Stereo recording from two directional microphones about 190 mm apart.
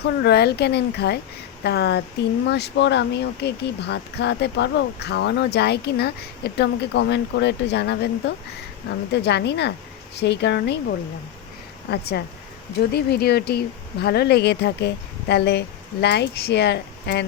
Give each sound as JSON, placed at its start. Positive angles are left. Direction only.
{"t": 0.0, "sound": "speech", "side_deg": 60}
{"t": 9.1, "sound": "speech", "side_deg": 60}